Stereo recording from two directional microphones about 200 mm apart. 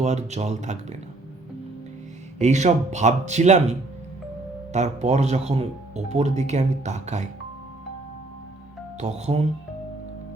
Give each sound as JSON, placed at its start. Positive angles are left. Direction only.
{"t": 0.0, "sound": "speech", "side_deg": -35}
{"t": 2.4, "sound": "speech", "side_deg": -35}
{"t": 9.0, "sound": "speech", "side_deg": -35}